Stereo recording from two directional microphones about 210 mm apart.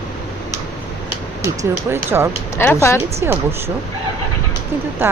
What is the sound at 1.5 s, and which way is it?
Speech, 10° right (ahead or behind).